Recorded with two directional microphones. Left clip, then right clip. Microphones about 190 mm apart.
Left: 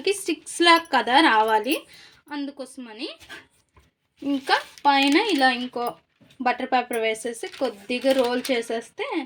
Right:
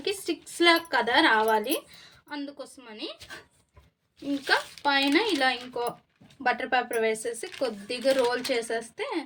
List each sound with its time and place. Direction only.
0.1 s a woman's voice: 35° left (ahead or behind)
4.4 s a woman's voice: 30° left (ahead or behind)